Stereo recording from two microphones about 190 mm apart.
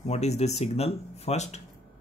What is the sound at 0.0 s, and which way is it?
Speech, 35° left (ahead or behind).